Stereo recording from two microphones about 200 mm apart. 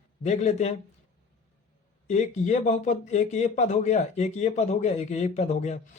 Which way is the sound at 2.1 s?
35° left (ahead or behind).